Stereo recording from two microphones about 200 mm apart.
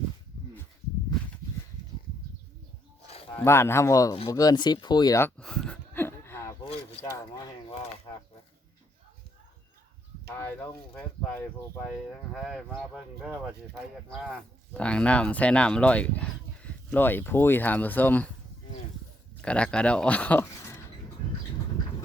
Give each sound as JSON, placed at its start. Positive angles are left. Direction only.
{"t": 3.3, "sound": "speech", "side_deg": 10}
{"t": 5.4, "sound": "a sound", "side_deg": 5}
{"t": 6.7, "sound": "speech", "side_deg": 15}
{"t": 12.3, "sound": "speech", "side_deg": 0}
{"t": 14.2, "sound": "speech", "side_deg": 5}
{"t": 19.4, "sound": "speech", "side_deg": 5}